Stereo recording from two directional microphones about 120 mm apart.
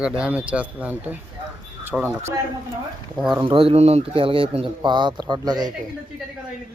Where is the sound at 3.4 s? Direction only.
45° right (ahead or behind).